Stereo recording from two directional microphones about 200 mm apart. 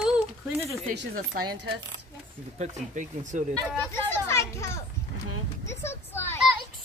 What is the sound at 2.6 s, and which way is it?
Speech, 40° right (ahead or behind).